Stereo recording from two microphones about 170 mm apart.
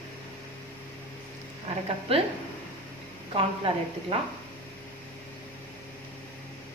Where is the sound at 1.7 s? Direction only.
40° right (ahead or behind).